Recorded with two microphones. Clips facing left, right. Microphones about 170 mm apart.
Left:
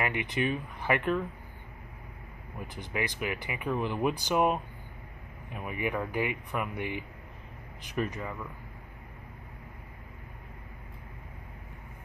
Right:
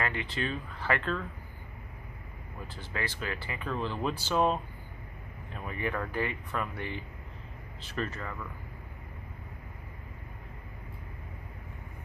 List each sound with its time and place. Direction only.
0.0 s speech: 15° left (ahead or behind)
2.7 s speech: 15° left (ahead or behind)